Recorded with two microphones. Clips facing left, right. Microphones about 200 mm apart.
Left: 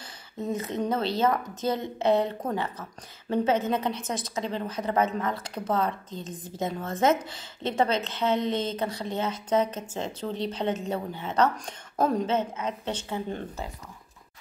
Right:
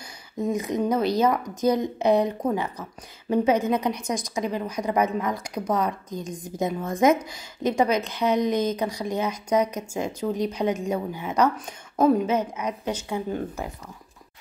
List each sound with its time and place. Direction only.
0.4 s speech: 15° right (ahead or behind)